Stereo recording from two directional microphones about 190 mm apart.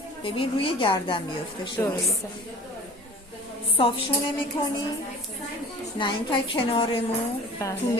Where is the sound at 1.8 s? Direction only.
10° left (ahead or behind).